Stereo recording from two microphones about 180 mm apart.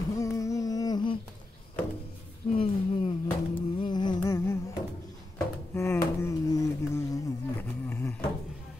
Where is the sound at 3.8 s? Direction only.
25° left (ahead or behind).